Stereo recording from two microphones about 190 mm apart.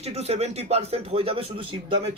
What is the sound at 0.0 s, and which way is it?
Speech, 35° right (ahead or behind).